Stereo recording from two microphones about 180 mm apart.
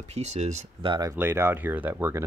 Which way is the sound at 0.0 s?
40° right (ahead or behind).